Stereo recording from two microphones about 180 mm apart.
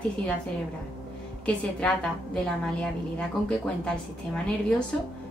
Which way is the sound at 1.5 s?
5° left (ahead or behind).